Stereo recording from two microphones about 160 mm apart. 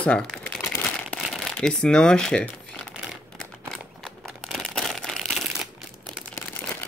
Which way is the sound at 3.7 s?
Centre (ahead or behind).